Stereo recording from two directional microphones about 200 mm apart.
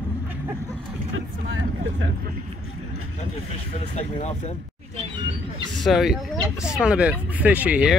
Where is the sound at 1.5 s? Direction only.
75° right (ahead or behind).